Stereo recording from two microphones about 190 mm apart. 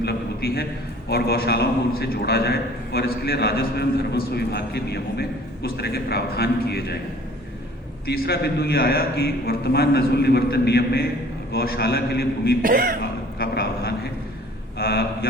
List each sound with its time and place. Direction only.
0.0 s a man's voice: 55° left (ahead or behind)
8.0 s a man's voice: 55° left (ahead or behind)
12.6 s speech: 45° right (ahead or behind)
13.0 s a man's voice: 55° left (ahead or behind)